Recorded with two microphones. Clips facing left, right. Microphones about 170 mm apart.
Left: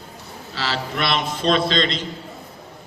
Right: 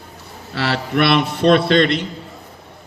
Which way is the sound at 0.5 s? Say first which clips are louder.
Right 7 dB; 60° right (ahead or behind).